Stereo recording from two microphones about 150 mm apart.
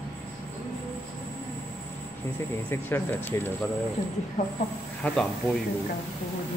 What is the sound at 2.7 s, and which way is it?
Speech, 15° left (ahead or behind).